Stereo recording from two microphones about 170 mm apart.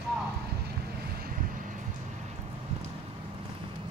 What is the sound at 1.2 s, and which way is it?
Vehicle, 50° right (ahead or behind).